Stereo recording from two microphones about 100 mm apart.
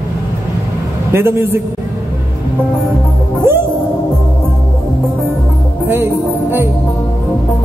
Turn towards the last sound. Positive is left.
turn(degrees=-25)  # may be behind; listen again after turning